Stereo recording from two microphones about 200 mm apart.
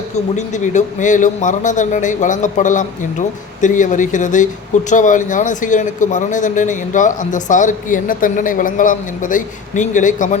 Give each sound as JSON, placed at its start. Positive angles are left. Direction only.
{"t": 0.3, "sound": "a man's voice", "side_deg": 35}